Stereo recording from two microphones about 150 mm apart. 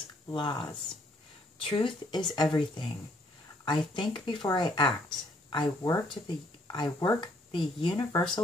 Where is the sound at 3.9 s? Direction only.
30° left (ahead or behind).